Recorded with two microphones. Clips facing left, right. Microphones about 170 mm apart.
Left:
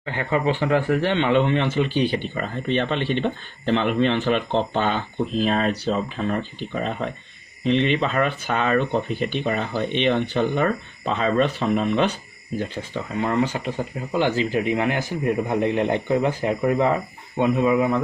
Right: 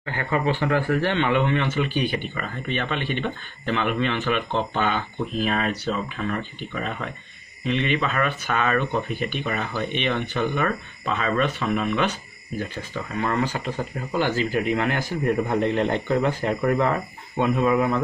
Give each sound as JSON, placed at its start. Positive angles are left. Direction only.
{"t": 0.0, "sound": "a man's voice", "side_deg": 25}